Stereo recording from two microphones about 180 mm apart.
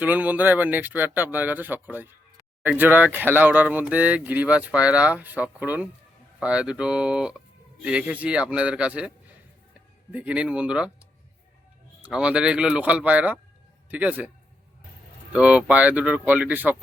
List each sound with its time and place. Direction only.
0.0 s speech: 10° right (ahead or behind)
12.0 s speech: 5° right (ahead or behind)
15.3 s speech: 5° right (ahead or behind)